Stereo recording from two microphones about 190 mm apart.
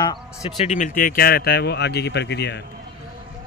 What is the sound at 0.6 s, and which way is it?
Speech, 40° left (ahead or behind).